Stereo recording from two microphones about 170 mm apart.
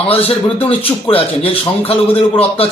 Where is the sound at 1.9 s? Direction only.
35° left (ahead or behind).